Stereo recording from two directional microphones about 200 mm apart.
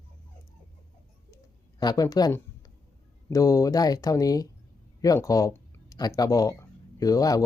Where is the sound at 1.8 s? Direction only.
20° left (ahead or behind).